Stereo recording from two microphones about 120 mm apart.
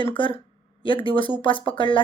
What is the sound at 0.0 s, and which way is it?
Speech, 45° left (ahead or behind).